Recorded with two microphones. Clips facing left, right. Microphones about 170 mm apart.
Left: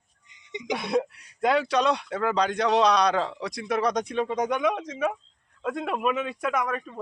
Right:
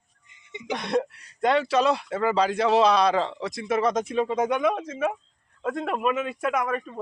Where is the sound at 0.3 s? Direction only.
20° left (ahead or behind).